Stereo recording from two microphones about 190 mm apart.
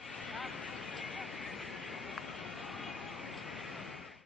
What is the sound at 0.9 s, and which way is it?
Vehicle, centre (ahead or behind).